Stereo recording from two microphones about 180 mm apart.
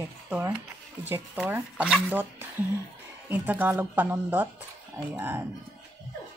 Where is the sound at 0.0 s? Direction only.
15° right (ahead or behind).